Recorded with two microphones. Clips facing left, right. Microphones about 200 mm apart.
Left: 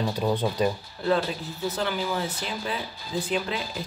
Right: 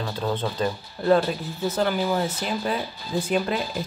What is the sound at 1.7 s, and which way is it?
Speech, 45° right (ahead or behind).